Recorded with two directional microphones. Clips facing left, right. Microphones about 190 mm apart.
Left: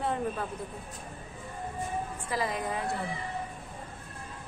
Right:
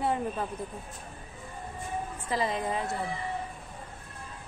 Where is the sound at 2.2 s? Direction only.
25° right (ahead or behind).